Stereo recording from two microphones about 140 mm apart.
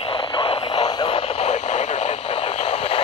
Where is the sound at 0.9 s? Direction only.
35° left (ahead or behind); by 2.1 s 55° left (ahead or behind).